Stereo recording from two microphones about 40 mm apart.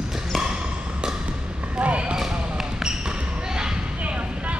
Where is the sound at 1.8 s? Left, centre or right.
Right.